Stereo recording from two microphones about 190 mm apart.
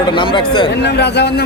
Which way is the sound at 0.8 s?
60° left (ahead or behind).